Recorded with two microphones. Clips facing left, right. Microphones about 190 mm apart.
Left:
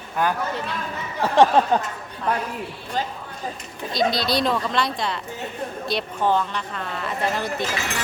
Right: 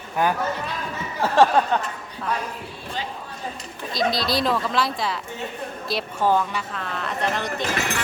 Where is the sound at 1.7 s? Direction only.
35° left (ahead or behind).